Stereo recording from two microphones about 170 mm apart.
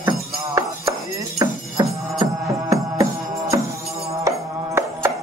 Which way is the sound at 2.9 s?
20° right (ahead or behind).